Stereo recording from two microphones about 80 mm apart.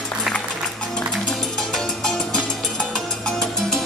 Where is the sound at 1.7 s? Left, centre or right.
Centre.